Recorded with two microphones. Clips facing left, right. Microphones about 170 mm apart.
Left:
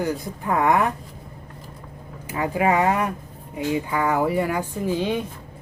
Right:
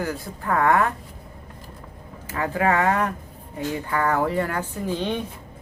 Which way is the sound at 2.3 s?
15° left (ahead or behind).